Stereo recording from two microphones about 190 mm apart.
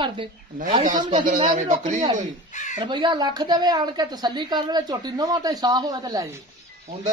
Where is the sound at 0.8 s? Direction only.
45° right (ahead or behind).